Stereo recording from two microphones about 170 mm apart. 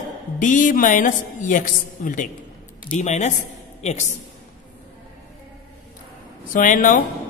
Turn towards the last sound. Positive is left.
turn(degrees=50)  # may be behind; listen again after turning